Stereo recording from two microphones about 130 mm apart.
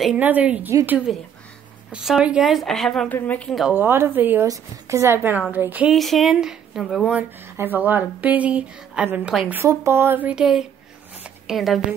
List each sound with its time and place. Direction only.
0.2 s a woman's voice: 10° right (ahead or behind); by 3.6 s 5° left (ahead or behind)
3.7 s a woman's voice: 15° right (ahead or behind)
5.9 s a woman's voice: centre (ahead or behind)
7.1 s speech: 15° right (ahead or behind)
9.5 s a woman's voice: 20° right (ahead or behind); by 11.8 s centre (ahead or behind)